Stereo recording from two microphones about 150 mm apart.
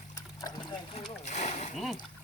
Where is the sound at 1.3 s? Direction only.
50° left (ahead or behind).